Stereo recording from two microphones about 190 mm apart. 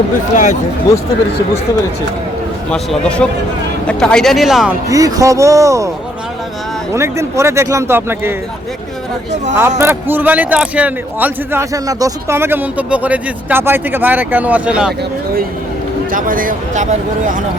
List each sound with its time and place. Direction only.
2.6 s speech: 5° left (ahead or behind)
4.9 s speech: 15° right (ahead or behind)
6.9 s speech: 15° right (ahead or behind)
9.6 s speech: 10° right (ahead or behind)
16.1 s speech: 45° right (ahead or behind)